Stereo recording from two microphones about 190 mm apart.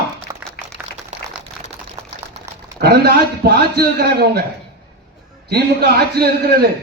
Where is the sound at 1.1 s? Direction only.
35° right (ahead or behind).